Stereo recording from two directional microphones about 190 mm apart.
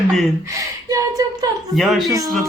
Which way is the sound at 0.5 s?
20° right (ahead or behind).